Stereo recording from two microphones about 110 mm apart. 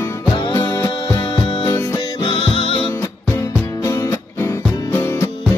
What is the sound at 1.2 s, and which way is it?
Music, 50° left (ahead or behind).